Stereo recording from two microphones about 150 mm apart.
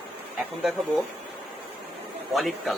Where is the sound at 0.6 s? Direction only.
Centre (ahead or behind).